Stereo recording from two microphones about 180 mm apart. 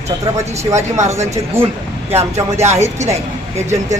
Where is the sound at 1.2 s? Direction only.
15° right (ahead or behind).